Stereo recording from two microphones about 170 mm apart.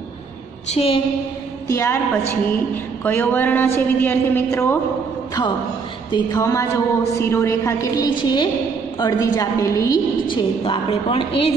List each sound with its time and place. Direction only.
0.7 s a woman's voice: 35° left (ahead or behind)
1.7 s a woman's voice: 15° left (ahead or behind)
6.1 s a woman's voice: 20° left (ahead or behind)